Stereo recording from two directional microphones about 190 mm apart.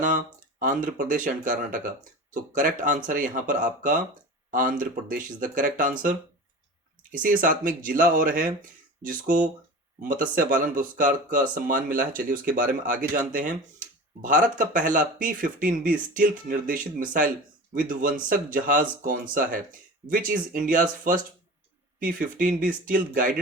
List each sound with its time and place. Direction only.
0.6 s speech: 45° right (ahead or behind)
7.1 s speech: 45° right (ahead or behind)